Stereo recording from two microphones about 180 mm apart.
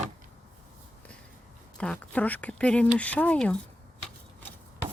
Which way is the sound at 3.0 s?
5° left (ahead or behind).